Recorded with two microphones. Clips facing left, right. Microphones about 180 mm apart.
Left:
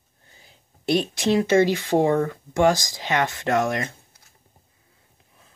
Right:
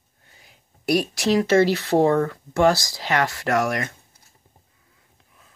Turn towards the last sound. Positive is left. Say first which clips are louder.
# even
turn(degrees=20)  # may be behind; listen again after turning